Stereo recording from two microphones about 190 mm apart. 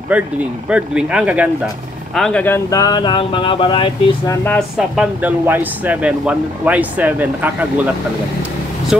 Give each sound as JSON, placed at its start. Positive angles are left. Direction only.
{"t": 0.1, "sound": "speech", "side_deg": -5}
{"t": 2.1, "sound": "speech", "side_deg": 5}
{"t": 4.5, "sound": "speech", "side_deg": 0}